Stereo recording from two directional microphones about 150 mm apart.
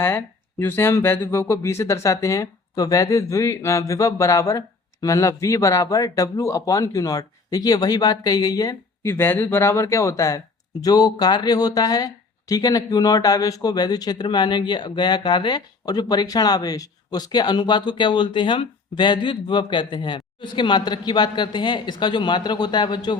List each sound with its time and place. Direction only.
0.0 s speech: 15° left (ahead or behind); by 23.1 s 30° left (ahead or behind)